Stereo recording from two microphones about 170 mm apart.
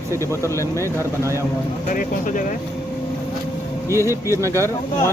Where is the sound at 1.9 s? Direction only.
50° left (ahead or behind).